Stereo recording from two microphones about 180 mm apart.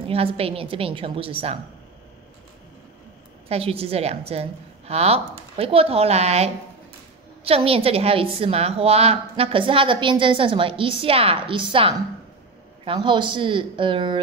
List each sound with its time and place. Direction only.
0.1 s a woman's voice: 30° right (ahead or behind)
3.4 s a woman's voice: 35° right (ahead or behind)